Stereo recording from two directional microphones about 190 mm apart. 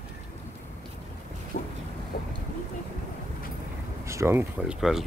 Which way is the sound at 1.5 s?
60° left (ahead or behind).